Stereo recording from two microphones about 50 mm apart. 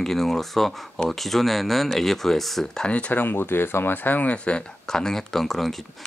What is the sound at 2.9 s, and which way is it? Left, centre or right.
Speech, left.